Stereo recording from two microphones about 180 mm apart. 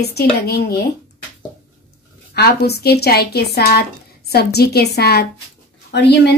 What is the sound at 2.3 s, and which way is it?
A woman's voice, 60° left (ahead or behind).